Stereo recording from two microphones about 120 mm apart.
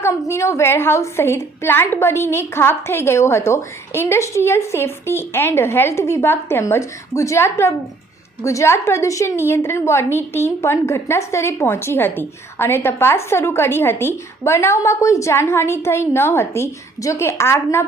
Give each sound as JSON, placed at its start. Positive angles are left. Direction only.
{"t": 0.0, "sound": "a woman's voice", "side_deg": 25}